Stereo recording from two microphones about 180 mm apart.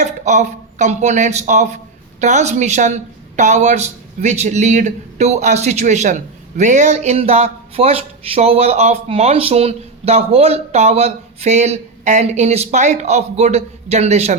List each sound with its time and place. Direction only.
0.0 s a woman's voice: 40° right (ahead or behind)